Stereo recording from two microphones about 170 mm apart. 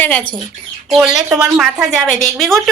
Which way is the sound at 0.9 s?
5° right (ahead or behind).